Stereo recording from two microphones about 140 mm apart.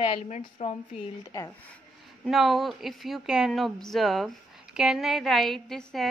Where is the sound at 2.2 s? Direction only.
Centre (ahead or behind).